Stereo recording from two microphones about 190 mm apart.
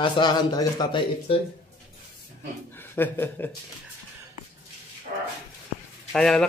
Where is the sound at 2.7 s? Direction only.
10° left (ahead or behind).